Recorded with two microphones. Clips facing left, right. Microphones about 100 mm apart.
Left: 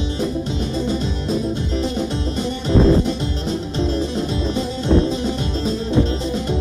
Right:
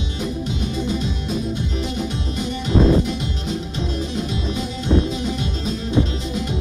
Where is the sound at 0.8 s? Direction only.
35° left (ahead or behind).